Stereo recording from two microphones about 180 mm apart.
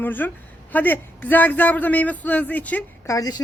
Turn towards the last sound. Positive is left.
turn(degrees=20)  # may be behind; listen again after turning